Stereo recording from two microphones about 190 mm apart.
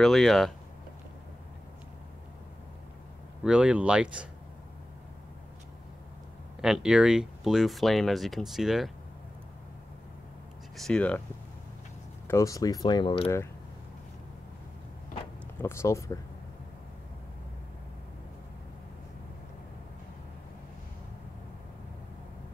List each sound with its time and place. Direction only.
0.0 s speech: centre (ahead or behind)
3.4 s speech: 5° right (ahead or behind)
6.6 s speech: 5° right (ahead or behind)
10.8 s speech: 5° left (ahead or behind)
12.3 s speech: 15° left (ahead or behind)
15.6 s speech: 15° left (ahead or behind)